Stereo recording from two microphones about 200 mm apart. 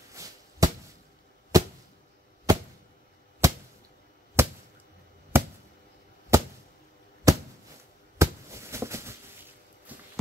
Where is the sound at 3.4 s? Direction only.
15° right (ahead or behind).